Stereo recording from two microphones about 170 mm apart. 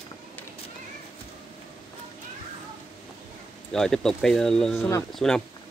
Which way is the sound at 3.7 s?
5° left (ahead or behind).